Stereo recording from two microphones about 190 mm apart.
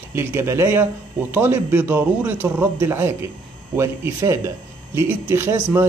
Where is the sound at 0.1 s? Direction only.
15° right (ahead or behind).